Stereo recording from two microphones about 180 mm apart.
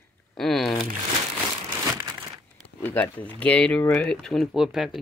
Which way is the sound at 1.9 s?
15° right (ahead or behind).